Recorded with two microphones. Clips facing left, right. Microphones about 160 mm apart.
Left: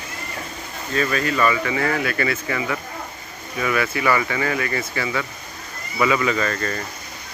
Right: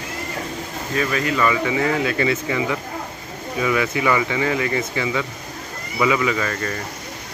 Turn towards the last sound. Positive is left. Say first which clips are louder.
# left 1 dB
turn(degrees=-10)  # may be behind; listen again after turning